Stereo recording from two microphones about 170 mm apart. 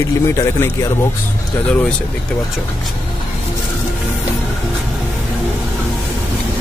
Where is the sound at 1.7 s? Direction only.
5° left (ahead or behind).